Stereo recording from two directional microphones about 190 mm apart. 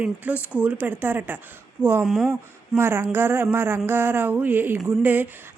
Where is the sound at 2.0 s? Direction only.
Centre (ahead or behind).